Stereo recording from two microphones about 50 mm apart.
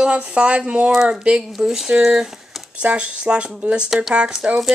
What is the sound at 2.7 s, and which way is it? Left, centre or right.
Speech, right.